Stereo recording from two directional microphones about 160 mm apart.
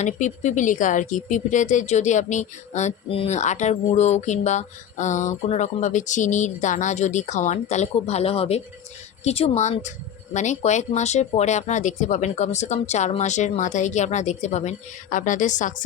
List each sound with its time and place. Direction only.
0.0 s speech: 50° left (ahead or behind)